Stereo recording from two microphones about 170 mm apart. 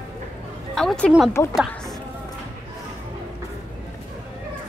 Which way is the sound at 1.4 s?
20° left (ahead or behind).